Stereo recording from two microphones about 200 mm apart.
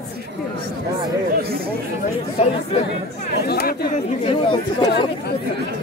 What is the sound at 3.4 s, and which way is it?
Speech, 55° left (ahead or behind).